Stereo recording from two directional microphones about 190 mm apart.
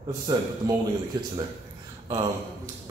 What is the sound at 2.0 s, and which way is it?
Speech, 20° right (ahead or behind).